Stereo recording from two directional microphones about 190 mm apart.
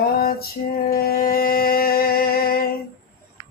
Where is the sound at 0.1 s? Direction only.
55° left (ahead or behind).